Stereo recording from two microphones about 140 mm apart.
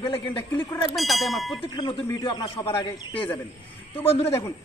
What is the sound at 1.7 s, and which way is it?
Speech, 35° left (ahead or behind).